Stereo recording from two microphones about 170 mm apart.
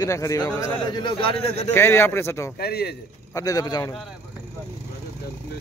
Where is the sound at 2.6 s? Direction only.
70° left (ahead or behind).